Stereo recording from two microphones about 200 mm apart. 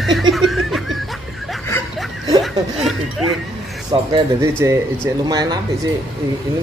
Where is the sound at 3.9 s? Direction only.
15° right (ahead or behind).